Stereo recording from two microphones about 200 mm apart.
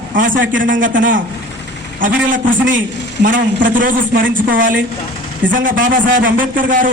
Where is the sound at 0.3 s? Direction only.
70° right (ahead or behind).